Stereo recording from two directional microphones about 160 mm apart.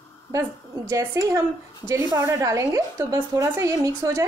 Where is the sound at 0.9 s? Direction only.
20° right (ahead or behind).